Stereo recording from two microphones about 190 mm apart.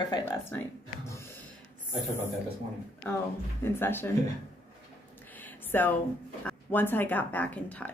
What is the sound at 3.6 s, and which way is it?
Speech, 10° left (ahead or behind).